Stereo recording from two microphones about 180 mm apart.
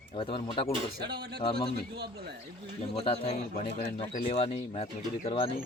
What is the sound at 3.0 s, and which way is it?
Speech, 35° left (ahead or behind).